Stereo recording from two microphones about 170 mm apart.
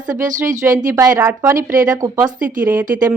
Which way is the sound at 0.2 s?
50° right (ahead or behind).